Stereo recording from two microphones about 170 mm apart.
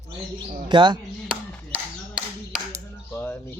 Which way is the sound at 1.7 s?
5° right (ahead or behind).